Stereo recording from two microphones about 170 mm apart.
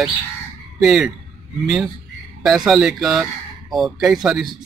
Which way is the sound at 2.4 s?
Centre (ahead or behind).